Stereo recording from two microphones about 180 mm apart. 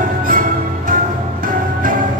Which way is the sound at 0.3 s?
50° right (ahead or behind).